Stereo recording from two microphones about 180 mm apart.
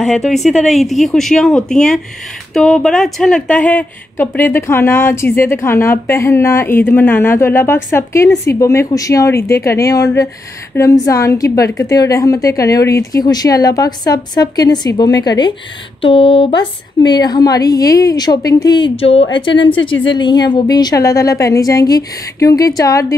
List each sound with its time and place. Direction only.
0.0 s a woman's voice: centre (ahead or behind); by 23.1 s 20° left (ahead or behind)